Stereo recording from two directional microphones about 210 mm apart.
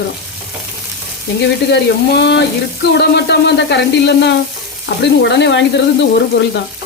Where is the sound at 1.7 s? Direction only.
55° left (ahead or behind).